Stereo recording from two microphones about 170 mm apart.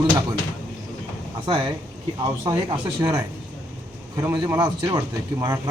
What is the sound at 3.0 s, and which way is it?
Speech, 25° right (ahead or behind).